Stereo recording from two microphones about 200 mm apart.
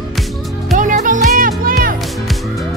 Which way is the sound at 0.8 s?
40° right (ahead or behind).